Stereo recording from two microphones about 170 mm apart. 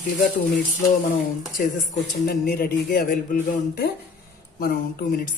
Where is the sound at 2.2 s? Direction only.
65° left (ahead or behind).